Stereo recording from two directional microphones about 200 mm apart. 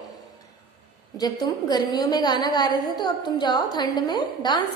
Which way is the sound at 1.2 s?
20° left (ahead or behind).